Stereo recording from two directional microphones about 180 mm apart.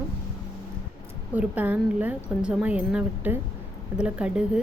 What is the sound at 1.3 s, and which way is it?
Speech, 10° right (ahead or behind).